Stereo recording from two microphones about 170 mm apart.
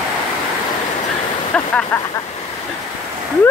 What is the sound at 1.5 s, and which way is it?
Speech, 5° left (ahead or behind).